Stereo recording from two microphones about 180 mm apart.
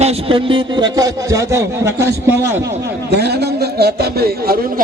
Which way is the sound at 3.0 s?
65° right (ahead or behind).